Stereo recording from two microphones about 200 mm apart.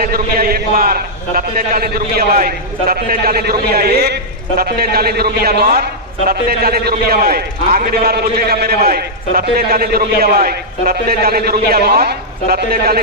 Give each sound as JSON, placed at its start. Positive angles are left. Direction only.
{"t": 0.0, "sound": "a man's voice", "side_deg": -50}